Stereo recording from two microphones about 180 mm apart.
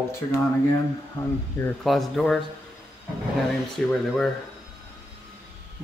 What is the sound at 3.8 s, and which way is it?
Speech, 5° left (ahead or behind).